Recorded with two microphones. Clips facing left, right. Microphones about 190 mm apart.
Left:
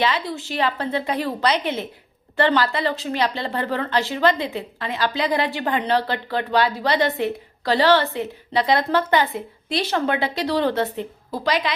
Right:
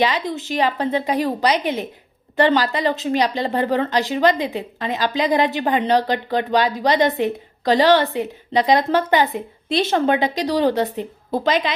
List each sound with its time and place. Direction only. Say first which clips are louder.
0.0 s a woman's voice: right 3 dB; 15° right (ahead or behind)